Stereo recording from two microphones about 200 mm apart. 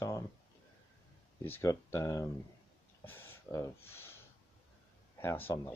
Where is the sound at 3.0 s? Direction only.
10° left (ahead or behind).